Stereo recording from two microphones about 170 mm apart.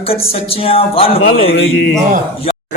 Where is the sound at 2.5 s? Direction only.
35° left (ahead or behind).